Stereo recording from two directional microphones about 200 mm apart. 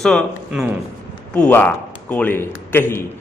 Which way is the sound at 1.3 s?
10° left (ahead or behind).